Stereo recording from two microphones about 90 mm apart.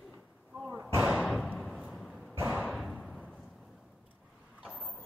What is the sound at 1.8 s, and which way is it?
Thump, centre (ahead or behind).